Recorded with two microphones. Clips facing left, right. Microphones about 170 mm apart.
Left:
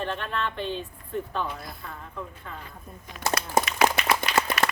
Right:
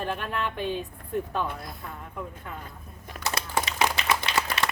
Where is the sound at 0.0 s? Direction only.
10° right (ahead or behind).